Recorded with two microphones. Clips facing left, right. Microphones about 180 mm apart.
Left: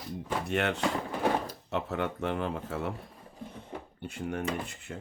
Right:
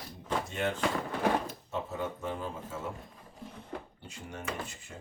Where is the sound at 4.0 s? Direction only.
60° left (ahead or behind).